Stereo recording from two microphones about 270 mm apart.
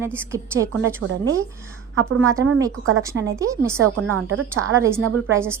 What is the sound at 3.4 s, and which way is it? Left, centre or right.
Speech, centre.